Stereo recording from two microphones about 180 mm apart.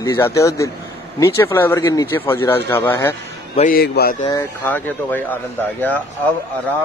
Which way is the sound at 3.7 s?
60° left (ahead or behind).